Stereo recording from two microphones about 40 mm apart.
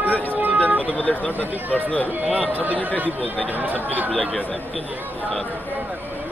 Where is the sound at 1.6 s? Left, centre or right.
Right.